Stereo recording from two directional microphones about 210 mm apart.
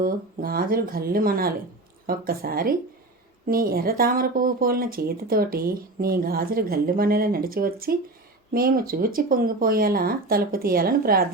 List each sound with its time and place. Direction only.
0.0 s speech: 45° right (ahead or behind)